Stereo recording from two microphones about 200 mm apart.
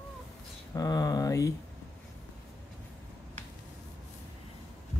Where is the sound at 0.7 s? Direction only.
20° left (ahead or behind).